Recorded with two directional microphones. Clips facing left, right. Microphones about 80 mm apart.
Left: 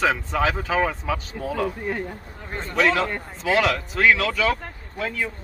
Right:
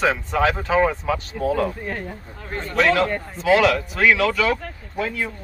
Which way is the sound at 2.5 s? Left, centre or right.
Centre.